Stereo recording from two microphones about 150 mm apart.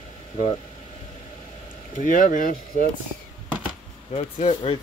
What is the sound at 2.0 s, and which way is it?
Speech, 65° left (ahead or behind).